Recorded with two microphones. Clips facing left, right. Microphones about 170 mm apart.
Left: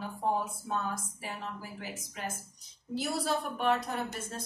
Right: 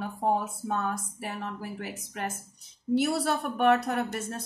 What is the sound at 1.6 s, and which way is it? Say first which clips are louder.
Speech: right 5 dB; 65° right (ahead or behind).